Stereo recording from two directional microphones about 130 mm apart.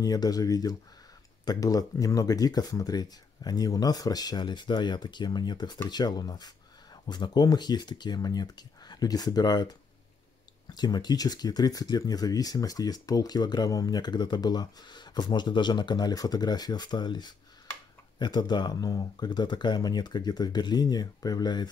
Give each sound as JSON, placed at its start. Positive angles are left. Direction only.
{"t": 0.0, "sound": "speech", "side_deg": 30}